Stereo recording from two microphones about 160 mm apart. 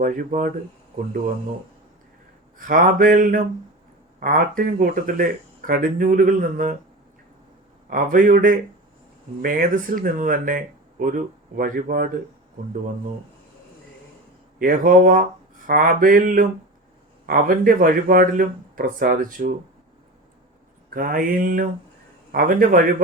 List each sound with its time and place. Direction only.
0.0 s speech: 55° right (ahead or behind)
2.6 s speech: 60° right (ahead or behind)
7.9 s speech: 60° right (ahead or behind)
14.6 s speech: 60° right (ahead or behind)
20.9 s speech: 65° right (ahead or behind)